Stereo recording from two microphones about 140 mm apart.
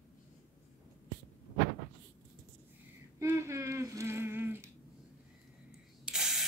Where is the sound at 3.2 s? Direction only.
20° right (ahead or behind).